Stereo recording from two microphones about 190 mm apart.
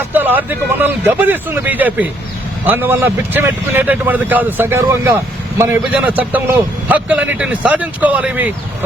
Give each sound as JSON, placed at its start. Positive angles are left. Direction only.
{"t": 0.1, "sound": "a man's voice", "side_deg": -10}